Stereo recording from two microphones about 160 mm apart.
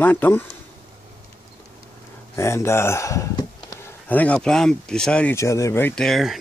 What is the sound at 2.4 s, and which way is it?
Speech, 15° left (ahead or behind).